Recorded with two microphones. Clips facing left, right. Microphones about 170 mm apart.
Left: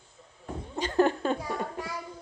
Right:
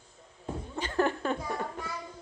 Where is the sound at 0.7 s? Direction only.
20° left (ahead or behind).